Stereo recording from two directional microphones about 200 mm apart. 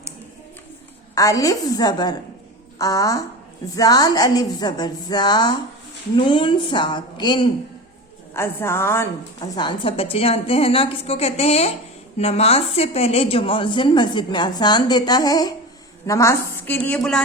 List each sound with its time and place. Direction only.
1.1 s a woman's voice: 15° left (ahead or behind)